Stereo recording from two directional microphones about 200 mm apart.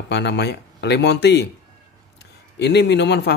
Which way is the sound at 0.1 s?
60° left (ahead or behind).